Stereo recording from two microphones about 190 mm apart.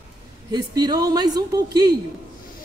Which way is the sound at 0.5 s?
20° right (ahead or behind).